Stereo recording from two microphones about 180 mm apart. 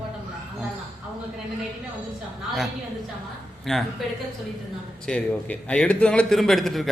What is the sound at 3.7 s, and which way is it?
Speech, centre (ahead or behind).